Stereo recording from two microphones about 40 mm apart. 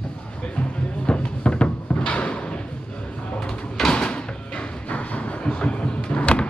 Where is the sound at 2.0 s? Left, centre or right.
Left.